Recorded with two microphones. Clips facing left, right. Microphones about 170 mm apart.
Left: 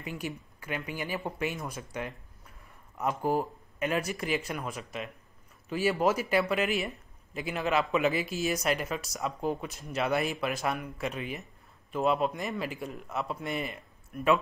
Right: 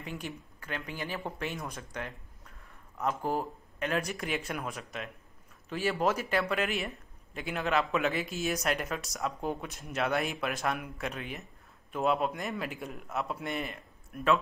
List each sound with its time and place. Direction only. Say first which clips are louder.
0.0 s speech: left 3 dB; 5° left (ahead or behind)